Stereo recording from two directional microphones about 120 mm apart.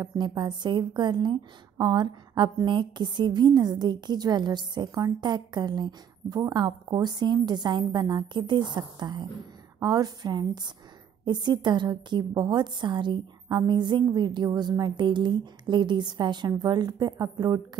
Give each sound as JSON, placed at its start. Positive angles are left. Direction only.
{"t": 0.0, "sound": "a woman's voice", "side_deg": -35}